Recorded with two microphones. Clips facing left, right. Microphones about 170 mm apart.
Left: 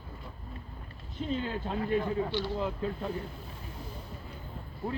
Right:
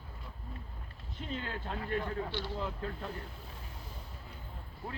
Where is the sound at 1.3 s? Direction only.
20° left (ahead or behind).